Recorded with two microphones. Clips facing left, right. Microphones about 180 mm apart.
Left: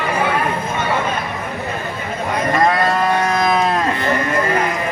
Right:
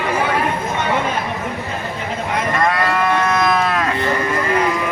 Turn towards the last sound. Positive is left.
turn(degrees=30)  # may be behind; listen again after turning